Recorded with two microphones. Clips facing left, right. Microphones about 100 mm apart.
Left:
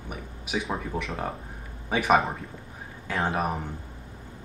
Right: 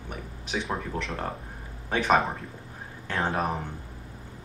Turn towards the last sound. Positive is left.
turn(degrees=5)  # may be behind; listen again after turning